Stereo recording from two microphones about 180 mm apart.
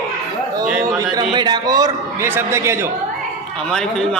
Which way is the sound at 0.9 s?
20° right (ahead or behind).